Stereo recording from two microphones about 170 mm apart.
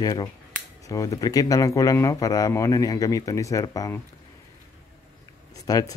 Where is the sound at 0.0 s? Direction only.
20° left (ahead or behind).